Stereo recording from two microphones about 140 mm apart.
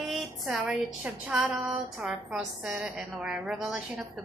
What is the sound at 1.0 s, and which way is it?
A woman's voice, 10° right (ahead or behind).